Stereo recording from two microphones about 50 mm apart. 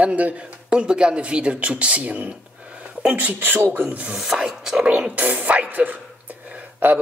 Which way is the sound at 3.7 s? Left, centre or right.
Right.